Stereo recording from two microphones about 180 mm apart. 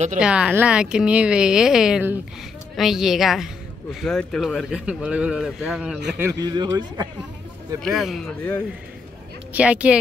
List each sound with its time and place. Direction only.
0.2 s speech: 5° right (ahead or behind)
6.1 s speech: 20° right (ahead or behind)
7.8 s speech: centre (ahead or behind)
9.5 s speech: 5° right (ahead or behind)